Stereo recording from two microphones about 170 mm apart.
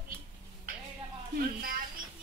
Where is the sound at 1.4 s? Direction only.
60° right (ahead or behind).